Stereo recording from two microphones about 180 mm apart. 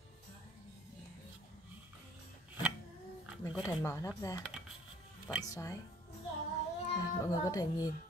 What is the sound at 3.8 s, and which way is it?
Speech, 15° left (ahead or behind).